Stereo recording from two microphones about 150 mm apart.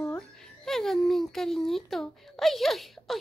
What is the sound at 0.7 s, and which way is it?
Speech, centre (ahead or behind).